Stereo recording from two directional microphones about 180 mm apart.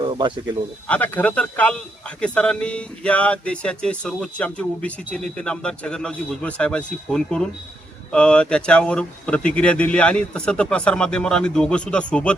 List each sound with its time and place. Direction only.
0.0 s speech: 25° right (ahead or behind)
0.9 s speech: 10° left (ahead or behind)